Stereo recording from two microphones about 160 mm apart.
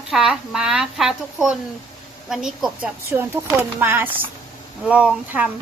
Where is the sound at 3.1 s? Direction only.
15° right (ahead or behind).